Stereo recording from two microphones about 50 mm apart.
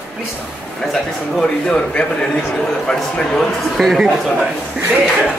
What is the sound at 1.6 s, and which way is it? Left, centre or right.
Speech, left.